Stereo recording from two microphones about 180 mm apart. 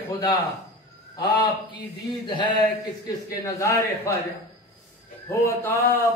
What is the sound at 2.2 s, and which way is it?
A man's voice, 25° left (ahead or behind).